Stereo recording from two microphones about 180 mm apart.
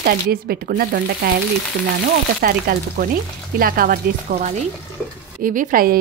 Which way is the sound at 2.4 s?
55° right (ahead or behind).